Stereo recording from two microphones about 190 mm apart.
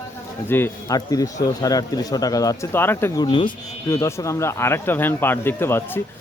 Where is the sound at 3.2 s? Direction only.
25° left (ahead or behind).